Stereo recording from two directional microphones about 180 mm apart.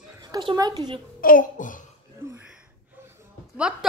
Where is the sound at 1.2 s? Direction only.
50° left (ahead or behind).